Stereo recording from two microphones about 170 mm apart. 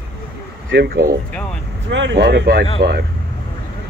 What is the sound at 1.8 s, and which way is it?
Speech, 90° right.